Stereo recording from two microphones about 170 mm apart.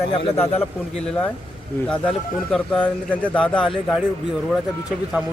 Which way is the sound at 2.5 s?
5° left (ahead or behind).